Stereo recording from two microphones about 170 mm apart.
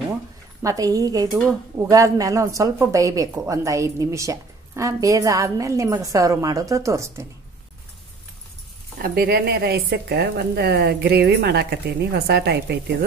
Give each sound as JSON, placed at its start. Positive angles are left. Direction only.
{"t": 0.6, "sound": "a woman's voice", "side_deg": -20}
{"t": 9.0, "sound": "a woman's voice", "side_deg": -65}